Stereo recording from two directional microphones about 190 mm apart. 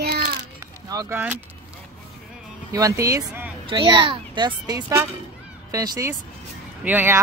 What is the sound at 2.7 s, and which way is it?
Speech, 15° right (ahead or behind).